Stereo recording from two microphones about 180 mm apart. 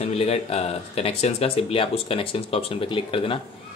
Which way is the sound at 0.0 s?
35° left (ahead or behind).